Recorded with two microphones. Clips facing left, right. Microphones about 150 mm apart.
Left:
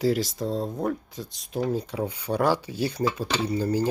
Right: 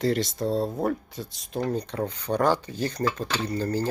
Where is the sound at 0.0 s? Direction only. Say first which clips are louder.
Even; centre (ahead or behind).